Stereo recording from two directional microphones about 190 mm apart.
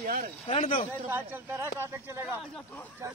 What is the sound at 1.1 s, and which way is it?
Speech, 10° right (ahead or behind).